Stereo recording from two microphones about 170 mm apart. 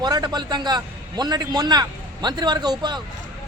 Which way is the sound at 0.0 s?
25° right (ahead or behind).